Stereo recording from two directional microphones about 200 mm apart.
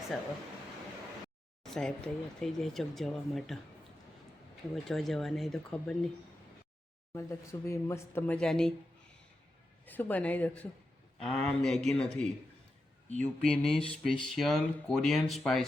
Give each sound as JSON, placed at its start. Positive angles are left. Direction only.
{"t": 1.7, "sound": "speech", "side_deg": 5}
{"t": 4.7, "sound": "speech", "side_deg": 0}
{"t": 7.1, "sound": "speech", "side_deg": 15}
{"t": 9.8, "sound": "speech", "side_deg": 10}